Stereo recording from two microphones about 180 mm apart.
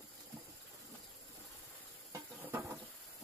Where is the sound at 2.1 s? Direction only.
15° right (ahead or behind).